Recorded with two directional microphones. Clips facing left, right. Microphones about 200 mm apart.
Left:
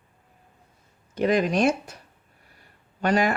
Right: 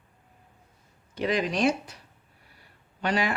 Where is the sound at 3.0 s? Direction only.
45° left (ahead or behind).